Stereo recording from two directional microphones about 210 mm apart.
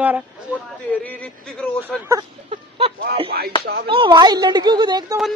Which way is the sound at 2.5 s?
25° right (ahead or behind).